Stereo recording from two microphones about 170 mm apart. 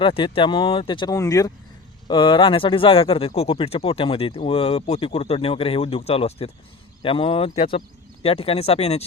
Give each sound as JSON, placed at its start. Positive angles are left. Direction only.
{"t": 0.0, "sound": "speech", "side_deg": 30}